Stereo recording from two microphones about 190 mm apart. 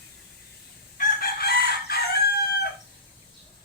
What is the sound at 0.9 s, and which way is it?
Chicken, 55° left (ahead or behind).